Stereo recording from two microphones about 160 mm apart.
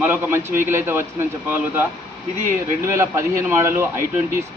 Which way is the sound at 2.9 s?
15° right (ahead or behind).